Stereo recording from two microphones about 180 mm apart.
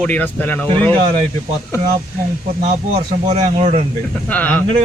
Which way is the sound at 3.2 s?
40° right (ahead or behind).